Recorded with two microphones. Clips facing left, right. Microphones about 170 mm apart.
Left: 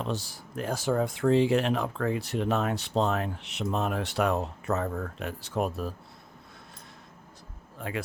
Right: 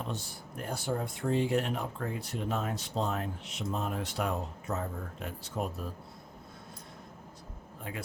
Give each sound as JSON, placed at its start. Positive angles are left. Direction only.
{"t": 0.0, "sound": "speech", "side_deg": 90}
{"t": 7.8, "sound": "speech", "side_deg": 85}